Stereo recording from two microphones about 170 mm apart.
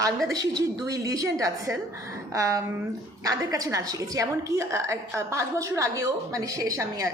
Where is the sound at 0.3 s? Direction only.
20° right (ahead or behind).